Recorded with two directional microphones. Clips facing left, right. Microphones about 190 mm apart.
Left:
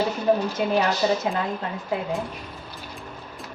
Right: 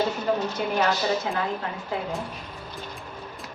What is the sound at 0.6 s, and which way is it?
Speech, 20° left (ahead or behind).